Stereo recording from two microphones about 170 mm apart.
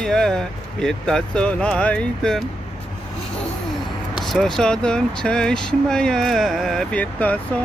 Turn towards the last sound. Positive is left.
turn(degrees=10)  # may be behind; listen again after turning